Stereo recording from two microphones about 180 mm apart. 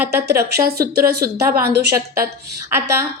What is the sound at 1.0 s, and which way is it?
Speech, 55° right (ahead or behind).